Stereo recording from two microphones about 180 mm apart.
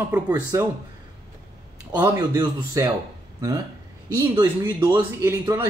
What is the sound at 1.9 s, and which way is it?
Speech, 25° right (ahead or behind).